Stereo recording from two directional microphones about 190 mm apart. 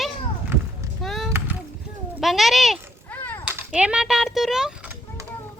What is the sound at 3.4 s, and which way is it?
A child's voice, 5° right (ahead or behind).